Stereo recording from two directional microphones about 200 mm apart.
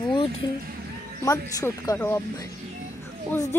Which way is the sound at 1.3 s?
15° left (ahead or behind).